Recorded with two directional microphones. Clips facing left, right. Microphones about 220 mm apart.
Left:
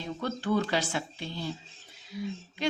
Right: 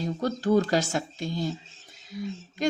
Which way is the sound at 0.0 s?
40° right (ahead or behind).